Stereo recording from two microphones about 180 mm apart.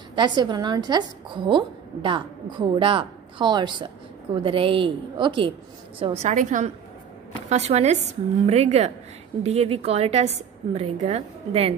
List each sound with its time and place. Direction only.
0.1 s a woman's voice: 25° right (ahead or behind)